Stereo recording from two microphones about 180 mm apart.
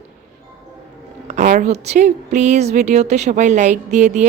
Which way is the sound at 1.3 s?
45° right (ahead or behind).